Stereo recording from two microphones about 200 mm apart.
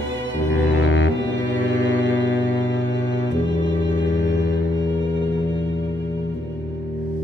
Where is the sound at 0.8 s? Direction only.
65° left (ahead or behind).